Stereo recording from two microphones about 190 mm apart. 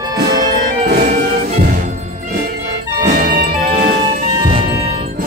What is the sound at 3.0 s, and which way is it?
Music, 50° right (ahead or behind).